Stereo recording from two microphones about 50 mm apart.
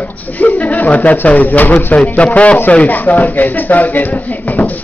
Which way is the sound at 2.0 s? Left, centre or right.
Left.